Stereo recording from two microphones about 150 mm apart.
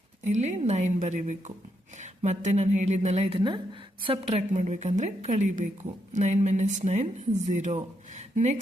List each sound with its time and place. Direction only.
0.3 s a woman's voice: 50° right (ahead or behind)